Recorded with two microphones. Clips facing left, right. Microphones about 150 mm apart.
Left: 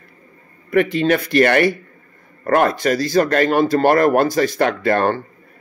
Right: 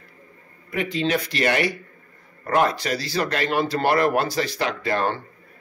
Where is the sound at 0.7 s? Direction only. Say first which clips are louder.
Left 8 dB; 60° left (ahead or behind).